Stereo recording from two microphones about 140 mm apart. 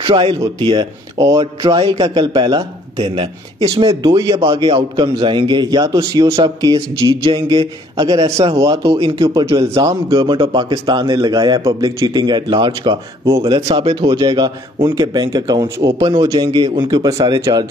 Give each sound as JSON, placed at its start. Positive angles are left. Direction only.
{"t": 0.0, "sound": "a man's voice", "side_deg": -40}
{"t": 1.4, "sound": "a man's voice", "side_deg": -40}
{"t": 8.9, "sound": "a man's voice", "side_deg": -40}